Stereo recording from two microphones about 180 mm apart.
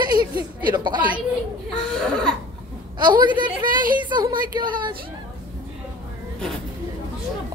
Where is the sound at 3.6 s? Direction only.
50° right (ahead or behind).